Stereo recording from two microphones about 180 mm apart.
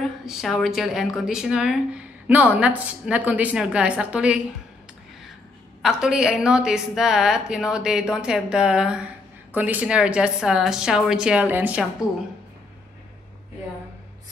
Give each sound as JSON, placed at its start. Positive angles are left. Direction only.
{"t": 0.0, "sound": "a woman's voice", "side_deg": 0}
{"t": 5.8, "sound": "a woman's voice", "side_deg": -5}